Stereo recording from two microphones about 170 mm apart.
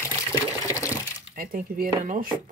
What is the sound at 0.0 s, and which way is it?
Water, 15° right (ahead or behind).